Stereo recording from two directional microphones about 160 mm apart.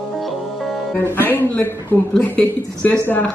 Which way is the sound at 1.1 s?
15° left (ahead or behind).